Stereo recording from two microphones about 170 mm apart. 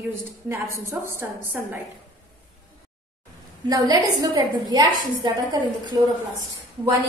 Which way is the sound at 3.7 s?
20° right (ahead or behind).